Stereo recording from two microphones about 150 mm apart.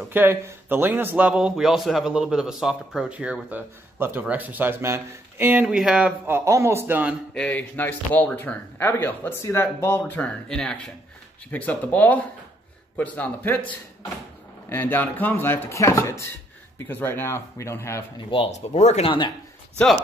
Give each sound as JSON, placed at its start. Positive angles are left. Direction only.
{"t": 0.1, "sound": "a man's voice", "side_deg": -15}
{"t": 7.3, "sound": "a man's voice", "side_deg": 10}
{"t": 14.7, "sound": "a man's voice", "side_deg": 15}
{"t": 18.3, "sound": "speech", "side_deg": 45}